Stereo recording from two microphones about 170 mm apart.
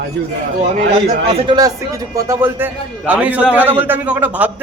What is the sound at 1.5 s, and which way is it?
A man's voice, 20° right (ahead or behind).